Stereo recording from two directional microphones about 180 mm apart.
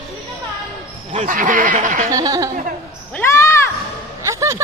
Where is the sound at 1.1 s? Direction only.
45° right (ahead or behind).